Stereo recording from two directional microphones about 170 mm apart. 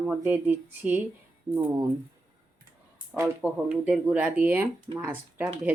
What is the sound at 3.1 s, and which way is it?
Speech, 10° right (ahead or behind).